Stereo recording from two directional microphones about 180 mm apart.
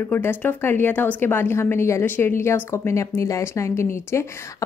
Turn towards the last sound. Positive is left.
turn(degrees=15)  # may be behind; listen again after turning